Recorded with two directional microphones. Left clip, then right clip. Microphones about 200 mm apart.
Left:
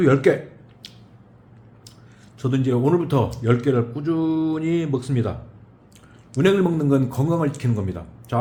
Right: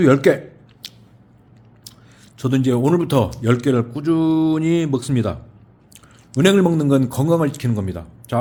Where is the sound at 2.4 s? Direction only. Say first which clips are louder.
Right 3 dB; 55° right (ahead or behind).